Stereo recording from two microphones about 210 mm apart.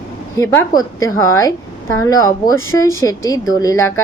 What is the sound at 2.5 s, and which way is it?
Speech, 75° left (ahead or behind).